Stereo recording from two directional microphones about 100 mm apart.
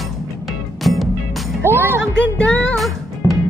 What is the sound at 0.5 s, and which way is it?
Music, centre (ahead or behind).